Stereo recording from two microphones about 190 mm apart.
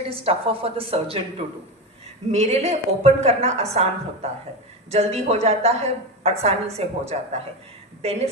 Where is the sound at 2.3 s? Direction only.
35° right (ahead or behind).